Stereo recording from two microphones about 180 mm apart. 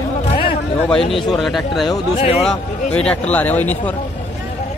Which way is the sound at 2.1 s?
35° left (ahead or behind).